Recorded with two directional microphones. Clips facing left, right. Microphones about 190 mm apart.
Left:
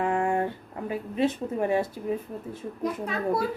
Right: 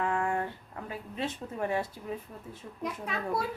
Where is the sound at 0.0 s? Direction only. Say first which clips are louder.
Left 5 dB; 25° left (ahead or behind).